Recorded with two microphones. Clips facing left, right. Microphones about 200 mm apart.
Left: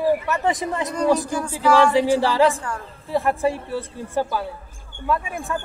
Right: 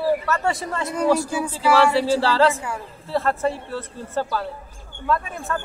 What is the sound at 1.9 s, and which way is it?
Speech, 15° left (ahead or behind).